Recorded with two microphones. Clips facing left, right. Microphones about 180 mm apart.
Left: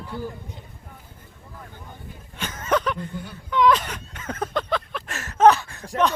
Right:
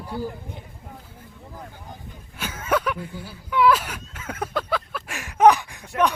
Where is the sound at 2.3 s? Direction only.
10° right (ahead or behind).